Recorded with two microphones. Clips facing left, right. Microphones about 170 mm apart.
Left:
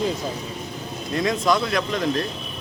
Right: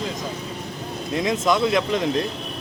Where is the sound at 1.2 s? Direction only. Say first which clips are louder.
Right 1 dB; 20° right (ahead or behind).